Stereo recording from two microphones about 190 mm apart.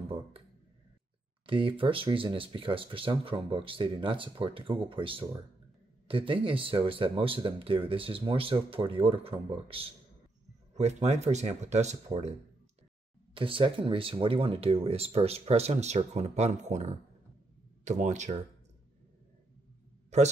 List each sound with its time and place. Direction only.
1.4 s speech: 25° right (ahead or behind)